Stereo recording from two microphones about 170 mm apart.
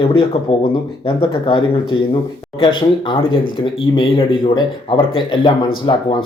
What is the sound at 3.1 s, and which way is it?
Speech, 30° left (ahead or behind).